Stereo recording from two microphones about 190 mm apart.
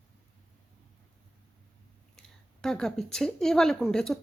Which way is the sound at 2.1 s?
Centre (ahead or behind).